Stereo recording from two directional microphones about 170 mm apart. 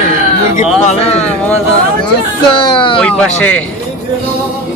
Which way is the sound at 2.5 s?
30° left (ahead or behind).